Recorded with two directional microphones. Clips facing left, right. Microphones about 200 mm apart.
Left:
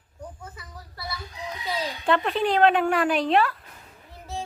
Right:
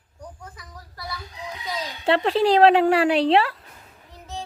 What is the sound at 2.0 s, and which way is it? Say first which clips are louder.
A woman's voice: right 5 dB; 30° right (ahead or behind).